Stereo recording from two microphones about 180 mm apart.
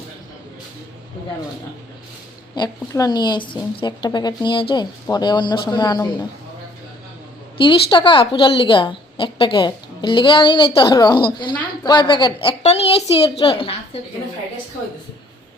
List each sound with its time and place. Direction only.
2.6 s a woman's voice: 20° left (ahead or behind)
7.6 s a woman's voice: 25° left (ahead or behind)